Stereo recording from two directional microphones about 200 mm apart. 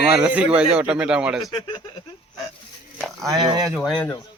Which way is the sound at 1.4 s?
20° left (ahead or behind).